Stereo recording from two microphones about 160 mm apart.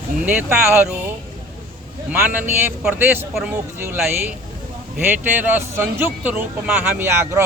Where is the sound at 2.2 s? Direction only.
10° right (ahead or behind).